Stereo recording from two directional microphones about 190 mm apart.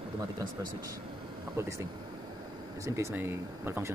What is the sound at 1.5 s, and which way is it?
Speech, 15° right (ahead or behind).